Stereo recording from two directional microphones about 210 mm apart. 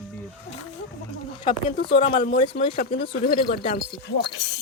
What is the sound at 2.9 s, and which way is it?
Speech, 50° left (ahead or behind).